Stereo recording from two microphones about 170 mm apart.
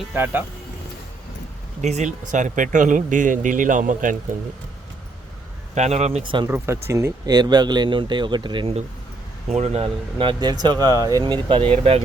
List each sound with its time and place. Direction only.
0.0 s speech: 10° right (ahead or behind)
1.8 s speech: 40° right (ahead or behind)
5.7 s speech: 40° right (ahead or behind)
6.5 s speech: 15° right (ahead or behind); by 12.0 s 35° right (ahead or behind)